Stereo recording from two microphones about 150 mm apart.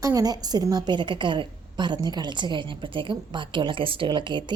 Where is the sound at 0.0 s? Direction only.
25° right (ahead or behind).